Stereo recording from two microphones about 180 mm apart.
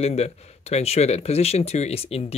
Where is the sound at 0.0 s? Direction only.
35° left (ahead or behind).